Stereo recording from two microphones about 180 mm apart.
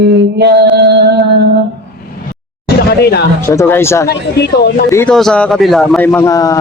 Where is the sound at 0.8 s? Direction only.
70° right (ahead or behind).